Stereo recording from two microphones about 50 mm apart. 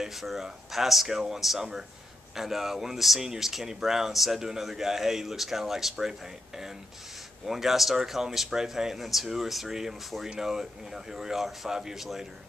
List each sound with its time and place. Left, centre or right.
0.0 s speech: centre